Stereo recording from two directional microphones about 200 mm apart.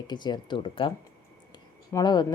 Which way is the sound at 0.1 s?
20° left (ahead or behind).